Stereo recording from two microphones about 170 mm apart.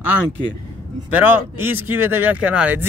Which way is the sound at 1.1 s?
10° right (ahead or behind).